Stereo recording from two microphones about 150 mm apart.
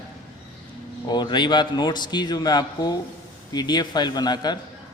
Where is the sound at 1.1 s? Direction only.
30° left (ahead or behind).